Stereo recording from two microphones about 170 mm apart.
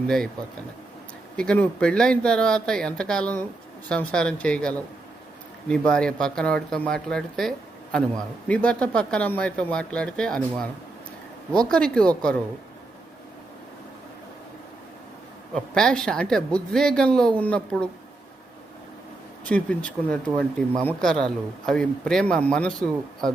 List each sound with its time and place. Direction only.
1.4 s speech: 5° left (ahead or behind)
11.7 s speech: 5° left (ahead or behind)
15.5 s speech: 5° left (ahead or behind)
19.5 s speech: 10° left (ahead or behind)